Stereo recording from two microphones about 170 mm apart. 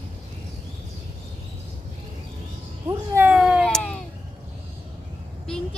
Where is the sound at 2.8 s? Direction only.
15° right (ahead or behind); by 3.9 s 5° left (ahead or behind).